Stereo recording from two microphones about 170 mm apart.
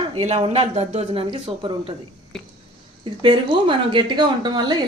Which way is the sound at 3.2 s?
30° right (ahead or behind).